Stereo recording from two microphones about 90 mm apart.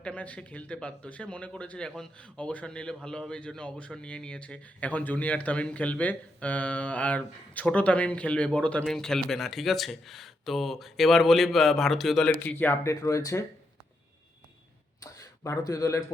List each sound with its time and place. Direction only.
0.0 s speech: 15° left (ahead or behind)
12.4 s speech: 20° left (ahead or behind)
12.8 s speech: 30° left (ahead or behind)
15.0 s speech: 40° left (ahead or behind)